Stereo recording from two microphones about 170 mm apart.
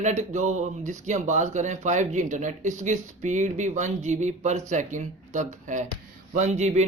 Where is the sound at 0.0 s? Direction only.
45° right (ahead or behind).